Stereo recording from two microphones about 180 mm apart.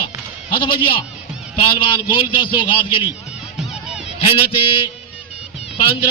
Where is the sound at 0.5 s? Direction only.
30° left (ahead or behind).